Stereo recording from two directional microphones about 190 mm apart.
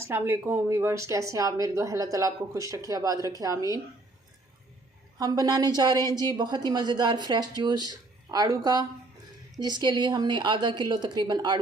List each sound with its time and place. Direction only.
0.0 s a woman's voice: 10° right (ahead or behind)
5.1 s a woman's voice: 20° right (ahead or behind)